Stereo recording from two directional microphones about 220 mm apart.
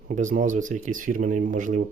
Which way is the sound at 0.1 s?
35° right (ahead or behind).